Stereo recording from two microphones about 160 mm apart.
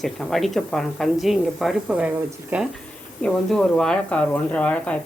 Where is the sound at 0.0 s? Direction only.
Centre (ahead or behind).